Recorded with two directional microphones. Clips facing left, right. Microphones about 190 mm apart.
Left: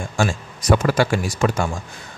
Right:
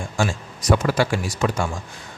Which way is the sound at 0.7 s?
50° left (ahead or behind).